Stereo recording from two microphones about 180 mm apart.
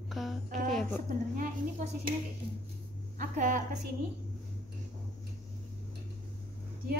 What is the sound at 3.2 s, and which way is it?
Speech, 45° right (ahead or behind).